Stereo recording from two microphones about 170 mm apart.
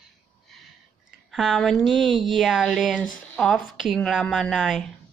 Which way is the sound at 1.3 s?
Centre (ahead or behind).